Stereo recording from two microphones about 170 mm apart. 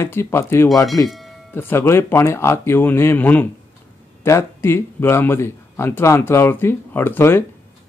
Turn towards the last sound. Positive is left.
turn(degrees=15)  # may be behind; listen again after turning